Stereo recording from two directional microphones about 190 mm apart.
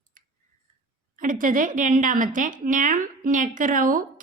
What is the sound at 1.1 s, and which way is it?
A woman's voice, 45° right (ahead or behind).